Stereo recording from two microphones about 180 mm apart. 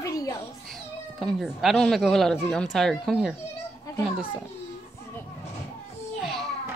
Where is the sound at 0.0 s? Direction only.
20° left (ahead or behind).